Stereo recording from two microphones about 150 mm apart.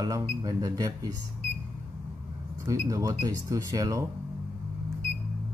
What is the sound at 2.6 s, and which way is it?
Speech, 20° right (ahead or behind).